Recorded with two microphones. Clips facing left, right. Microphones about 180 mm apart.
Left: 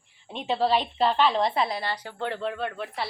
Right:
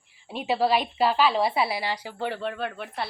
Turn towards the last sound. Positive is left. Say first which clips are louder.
# even
turn(degrees=0)  # may be behind; listen again after turning